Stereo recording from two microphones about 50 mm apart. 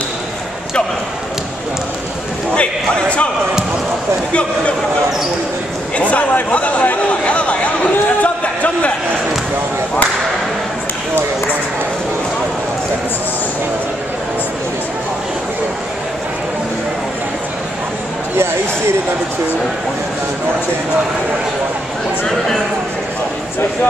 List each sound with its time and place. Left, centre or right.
2.5 s speech: left
4.3 s speech: left
5.9 s speech: left
6.5 s chatter: left